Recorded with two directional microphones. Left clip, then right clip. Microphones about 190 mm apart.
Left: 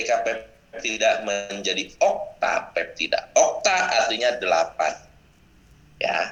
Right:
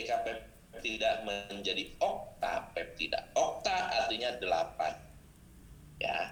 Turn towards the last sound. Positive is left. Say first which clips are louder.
# left 11 dB
turn(degrees=35)  # may be behind; listen again after turning